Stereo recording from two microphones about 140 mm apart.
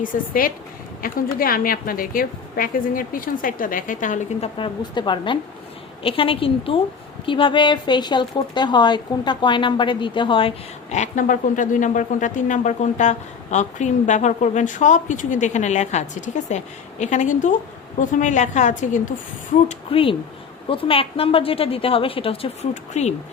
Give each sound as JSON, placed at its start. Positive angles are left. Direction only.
{"t": 0.0, "sound": "a woman's voice", "side_deg": 80}
{"t": 4.4, "sound": "a woman's voice", "side_deg": 40}
{"t": 10.9, "sound": "speech", "side_deg": 60}
{"t": 19.6, "sound": "a woman's voice", "side_deg": 40}
{"t": 22.7, "sound": "speech", "side_deg": 55}